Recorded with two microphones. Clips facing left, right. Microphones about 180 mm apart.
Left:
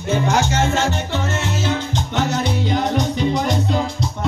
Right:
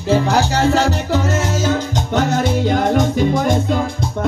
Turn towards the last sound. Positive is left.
turn(degrees=-50)  # may be behind; listen again after turning